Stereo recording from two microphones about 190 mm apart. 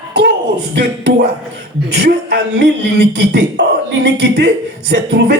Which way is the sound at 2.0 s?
60° right (ahead or behind).